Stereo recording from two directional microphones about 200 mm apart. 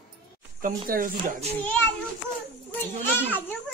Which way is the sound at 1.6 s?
10° left (ahead or behind).